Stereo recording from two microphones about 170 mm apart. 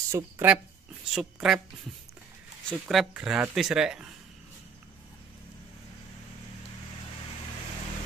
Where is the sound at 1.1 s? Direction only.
5° right (ahead or behind).